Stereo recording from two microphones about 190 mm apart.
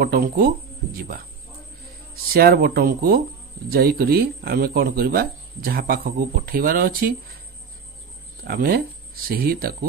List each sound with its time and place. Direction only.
0.0 s speech: 55° right (ahead or behind)
2.3 s speech: 55° right (ahead or behind)
8.5 s speech: 50° right (ahead or behind)